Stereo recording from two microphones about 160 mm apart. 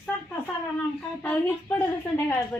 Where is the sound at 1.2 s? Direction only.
10° left (ahead or behind).